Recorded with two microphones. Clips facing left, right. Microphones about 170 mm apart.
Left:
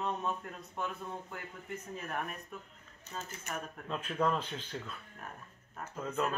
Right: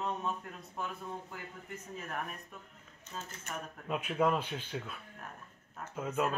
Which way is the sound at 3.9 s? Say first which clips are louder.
Right 2 dB; 10° right (ahead or behind).